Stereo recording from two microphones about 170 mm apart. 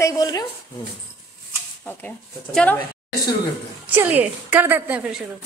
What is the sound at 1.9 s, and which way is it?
Speech, 10° left (ahead or behind).